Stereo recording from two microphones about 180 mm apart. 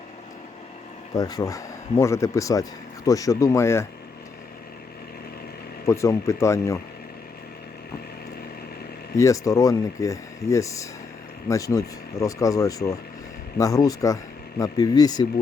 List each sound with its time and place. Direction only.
1.1 s speech: 20° left (ahead or behind)
5.8 s speech: 15° left (ahead or behind)
9.1 s speech: 15° left (ahead or behind)